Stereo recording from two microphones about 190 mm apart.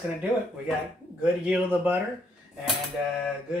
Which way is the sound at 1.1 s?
5° right (ahead or behind).